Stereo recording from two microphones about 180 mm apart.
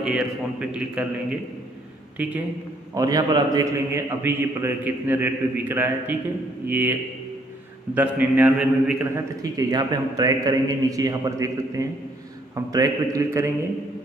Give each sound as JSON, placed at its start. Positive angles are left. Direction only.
{"t": 0.0, "sound": "a man's voice", "side_deg": -5}
{"t": 2.1, "sound": "a man's voice", "side_deg": -10}
{"t": 2.9, "sound": "a man's voice", "side_deg": -20}
{"t": 9.4, "sound": "a man's voice", "side_deg": -20}